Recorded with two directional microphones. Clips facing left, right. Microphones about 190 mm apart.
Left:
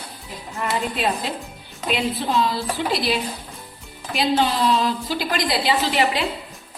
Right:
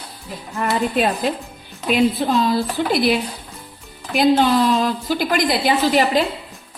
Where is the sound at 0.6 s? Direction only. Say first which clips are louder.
Right 5 dB; 50° right (ahead or behind).